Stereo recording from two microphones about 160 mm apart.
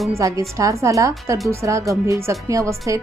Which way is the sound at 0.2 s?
20° right (ahead or behind).